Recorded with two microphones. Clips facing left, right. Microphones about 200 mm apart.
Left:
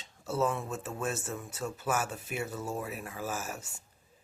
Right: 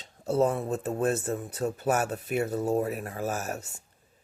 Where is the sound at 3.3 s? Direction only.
60° right (ahead or behind).